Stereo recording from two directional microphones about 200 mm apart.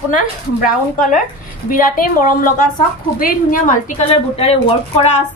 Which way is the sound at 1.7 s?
45° left (ahead or behind).